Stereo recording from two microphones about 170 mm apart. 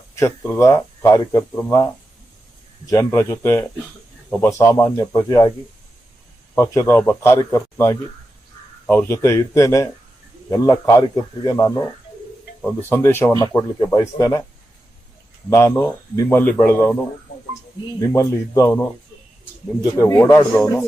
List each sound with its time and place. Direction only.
0.2 s speech: 15° left (ahead or behind)
6.6 s speech: 15° left (ahead or behind)
12.9 s speech: 15° left (ahead or behind)
15.4 s speech: 15° left (ahead or behind)
18.0 s speech: 20° left (ahead or behind)
20.0 s speech: 20° left (ahead or behind)